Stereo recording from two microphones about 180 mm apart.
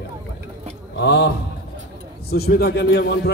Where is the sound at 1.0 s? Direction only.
70° left (ahead or behind).